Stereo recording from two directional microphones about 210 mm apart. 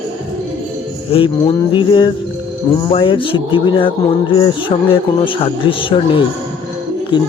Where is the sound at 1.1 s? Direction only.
25° left (ahead or behind).